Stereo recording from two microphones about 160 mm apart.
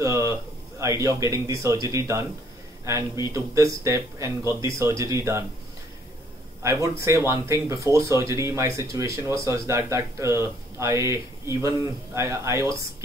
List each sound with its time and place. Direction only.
0.0 s a sound: 20° right (ahead or behind)
0.7 s a man's voice: 20° right (ahead or behind)
6.6 s speech: 20° right (ahead or behind)